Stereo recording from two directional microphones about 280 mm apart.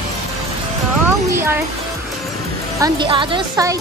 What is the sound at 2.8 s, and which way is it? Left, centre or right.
Speech, centre.